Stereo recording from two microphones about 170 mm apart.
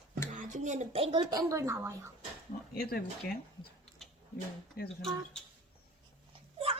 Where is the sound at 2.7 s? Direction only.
60° left (ahead or behind).